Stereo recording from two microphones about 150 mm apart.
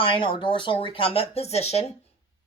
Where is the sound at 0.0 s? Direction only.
35° left (ahead or behind).